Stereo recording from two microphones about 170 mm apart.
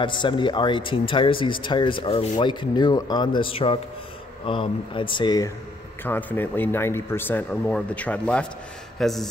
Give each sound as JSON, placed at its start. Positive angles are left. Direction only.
{"t": 0.0, "sound": "speech", "side_deg": 30}
{"t": 6.0, "sound": "speech", "side_deg": 10}